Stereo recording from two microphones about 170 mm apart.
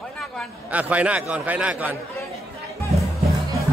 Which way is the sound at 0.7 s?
10° right (ahead or behind).